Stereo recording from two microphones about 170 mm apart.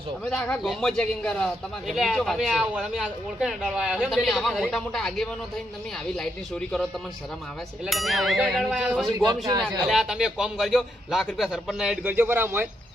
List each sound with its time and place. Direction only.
0.3 s speech: 5° left (ahead or behind)
7.9 s speech: centre (ahead or behind)
9.0 s a man's voice: 25° right (ahead or behind)
9.9 s speech: 5° right (ahead or behind)